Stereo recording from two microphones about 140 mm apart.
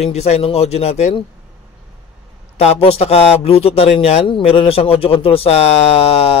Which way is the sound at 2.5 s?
50° left (ahead or behind).